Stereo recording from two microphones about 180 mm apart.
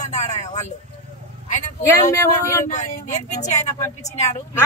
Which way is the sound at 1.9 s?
15° left (ahead or behind).